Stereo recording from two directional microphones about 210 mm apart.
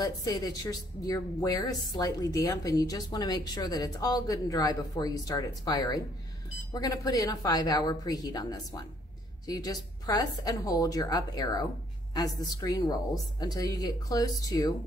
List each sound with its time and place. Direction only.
0.0 s a woman's voice: 20° left (ahead or behind)